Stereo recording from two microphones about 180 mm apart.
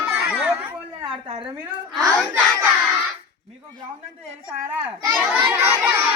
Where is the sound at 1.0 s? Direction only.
30° right (ahead or behind).